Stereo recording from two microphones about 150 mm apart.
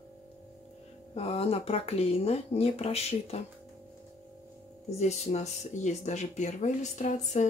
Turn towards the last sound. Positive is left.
turn(degrees=50)  # may be behind; listen again after turning